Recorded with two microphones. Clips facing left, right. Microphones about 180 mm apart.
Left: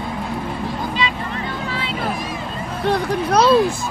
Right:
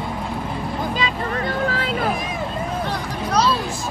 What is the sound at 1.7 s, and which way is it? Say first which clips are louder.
Vehicle: right 2 dB; 45° right (ahead or behind).